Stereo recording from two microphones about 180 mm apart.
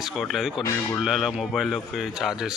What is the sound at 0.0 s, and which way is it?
A man's voice, centre (ahead or behind).